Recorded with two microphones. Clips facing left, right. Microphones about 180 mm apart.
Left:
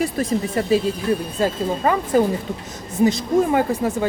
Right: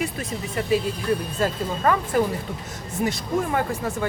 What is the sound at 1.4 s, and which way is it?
Speech, 20° left (ahead or behind).